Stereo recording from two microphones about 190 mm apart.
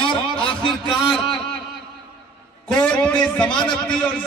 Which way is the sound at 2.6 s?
5° left (ahead or behind).